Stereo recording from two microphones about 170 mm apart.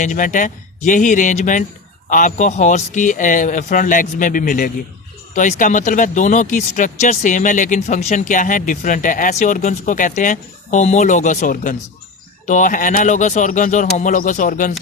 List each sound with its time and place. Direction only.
0.0 s speech: 50° left (ahead or behind)